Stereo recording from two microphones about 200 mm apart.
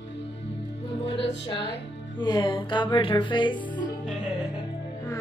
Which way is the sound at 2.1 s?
20° left (ahead or behind).